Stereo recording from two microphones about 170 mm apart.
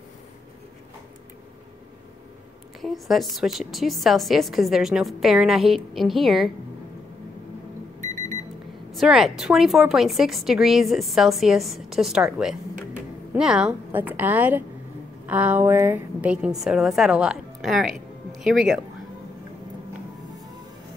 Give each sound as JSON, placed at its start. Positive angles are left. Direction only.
{"t": 2.8, "sound": "a woman's voice", "side_deg": 0}
{"t": 8.0, "sound": "alarm clock", "side_deg": 15}
{"t": 8.9, "sound": "a woman's voice", "side_deg": 0}